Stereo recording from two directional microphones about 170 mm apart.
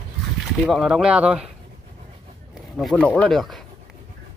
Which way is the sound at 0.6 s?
Centre (ahead or behind).